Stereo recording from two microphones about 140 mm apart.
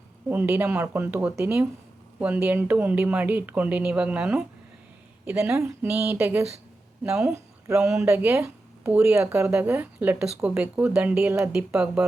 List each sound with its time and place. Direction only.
0.3 s speech: 15° right (ahead or behind)
8.0 s speech: 15° right (ahead or behind)